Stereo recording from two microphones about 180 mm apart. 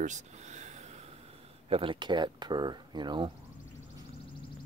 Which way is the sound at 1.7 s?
30° right (ahead or behind).